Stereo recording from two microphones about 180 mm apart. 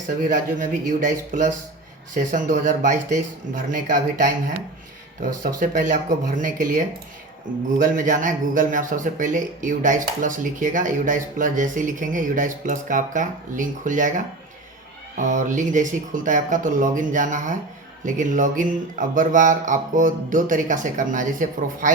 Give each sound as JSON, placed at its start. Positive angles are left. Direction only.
{"t": 0.2, "sound": "a man's voice", "side_deg": -45}
{"t": 15.2, "sound": "a man's voice", "side_deg": -45}